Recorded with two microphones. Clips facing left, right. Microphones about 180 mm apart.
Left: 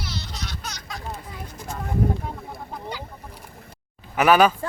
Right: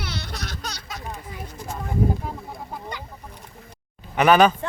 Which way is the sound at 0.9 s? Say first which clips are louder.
Even; 20° right (ahead or behind).